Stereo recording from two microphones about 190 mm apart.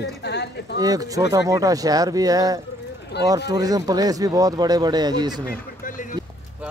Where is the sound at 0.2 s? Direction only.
60° left (ahead or behind).